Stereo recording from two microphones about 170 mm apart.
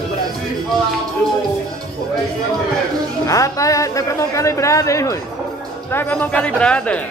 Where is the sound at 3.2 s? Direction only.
20° left (ahead or behind).